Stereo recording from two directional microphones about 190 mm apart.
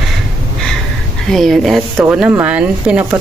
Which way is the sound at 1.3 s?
Centre (ahead or behind).